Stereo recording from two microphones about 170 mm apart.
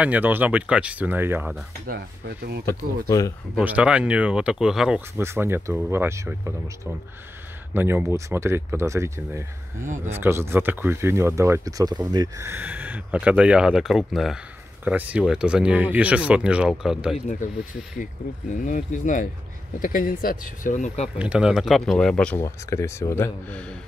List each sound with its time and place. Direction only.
0.0 s speech: 10° right (ahead or behind)
1.9 s speech: 70° right (ahead or behind)
3.1 s speech: 20° left (ahead or behind)
3.5 s speech: 10° right (ahead or behind)
5.1 s speech: 15° right (ahead or behind)
18.7 s speech: 50° left (ahead or behind)
21.2 s speech: 5° right (ahead or behind)
22.4 s speech: 15° left (ahead or behind)